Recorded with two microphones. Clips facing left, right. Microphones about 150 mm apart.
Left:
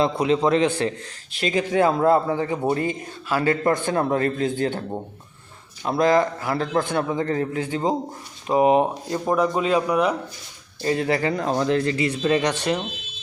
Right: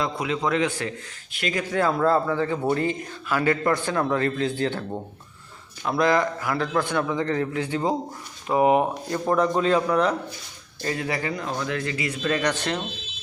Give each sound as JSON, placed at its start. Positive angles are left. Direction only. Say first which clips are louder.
{"t": 0.0, "sound": "a man's voice", "louder": "left 6 dB", "side_deg": 30}
{"t": 4.1, "sound": "a man's voice", "louder": "left 2 dB", "side_deg": 45}
{"t": 4.6, "sound": "a man's voice", "louder": "left 2 dB", "side_deg": 15}
{"t": 5.8, "sound": "a man's voice", "louder": "left 3 dB", "side_deg": 30}
{"t": 6.6, "sound": "a man's voice", "louder": "left 1 dB", "side_deg": 45}
{"t": 8.4, "sound": "a man's voice", "louder": "left 2 dB", "side_deg": 20}
{"t": 9.2, "sound": "a man's voice", "louder": "even", "side_deg": 10}
{"t": 10.8, "sound": "speech", "louder": "left 6 dB", "side_deg": 30}